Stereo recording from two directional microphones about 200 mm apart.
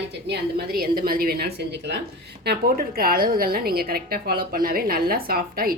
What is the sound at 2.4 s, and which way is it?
A woman's voice, 45° right (ahead or behind).